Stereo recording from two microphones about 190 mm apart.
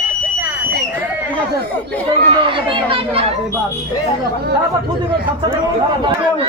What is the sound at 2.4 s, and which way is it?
Speech, 25° right (ahead or behind).